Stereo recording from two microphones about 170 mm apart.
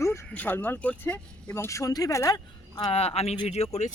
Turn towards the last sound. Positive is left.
turn(degrees=40)  # may be behind; listen again after turning